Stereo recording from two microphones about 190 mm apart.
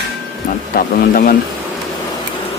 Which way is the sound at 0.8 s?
50° left (ahead or behind).